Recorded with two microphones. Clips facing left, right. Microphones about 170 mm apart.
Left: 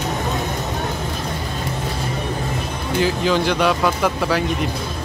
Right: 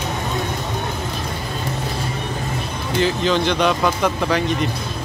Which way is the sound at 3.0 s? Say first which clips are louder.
Even; 10° left (ahead or behind).